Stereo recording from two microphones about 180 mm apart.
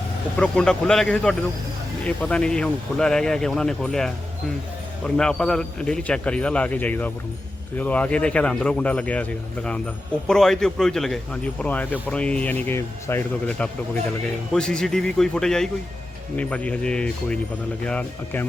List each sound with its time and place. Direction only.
0.3 s a man's voice: 5° left (ahead or behind)
10.2 s a man's voice: 5° left (ahead or behind)